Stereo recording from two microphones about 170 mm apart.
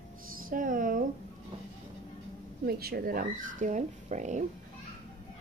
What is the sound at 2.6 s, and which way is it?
Speech, 65° right (ahead or behind).